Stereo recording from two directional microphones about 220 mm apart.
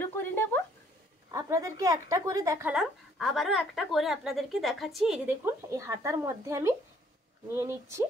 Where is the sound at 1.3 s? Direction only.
15° right (ahead or behind).